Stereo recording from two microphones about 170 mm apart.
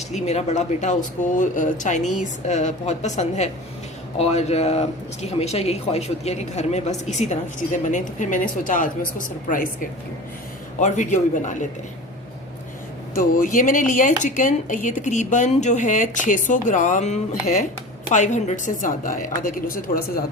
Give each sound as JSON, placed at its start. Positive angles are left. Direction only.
{"t": 0.1, "sound": "speech", "side_deg": 40}
{"t": 10.8, "sound": "speech", "side_deg": 45}
{"t": 13.1, "sound": "speech", "side_deg": 55}